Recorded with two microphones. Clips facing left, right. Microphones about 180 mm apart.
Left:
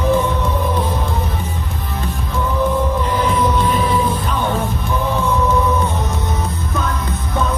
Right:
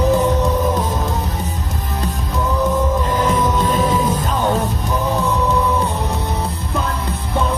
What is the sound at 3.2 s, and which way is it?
Music, 45° right (ahead or behind).